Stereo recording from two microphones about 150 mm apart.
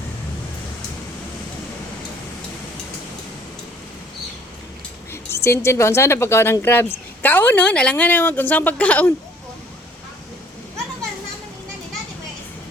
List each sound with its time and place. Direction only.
5.1 s a woman's voice: 15° left (ahead or behind)